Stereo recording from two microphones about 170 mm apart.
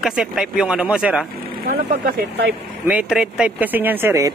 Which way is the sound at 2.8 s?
5° right (ahead or behind).